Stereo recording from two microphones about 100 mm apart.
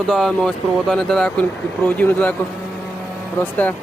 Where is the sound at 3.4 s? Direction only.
15° left (ahead or behind).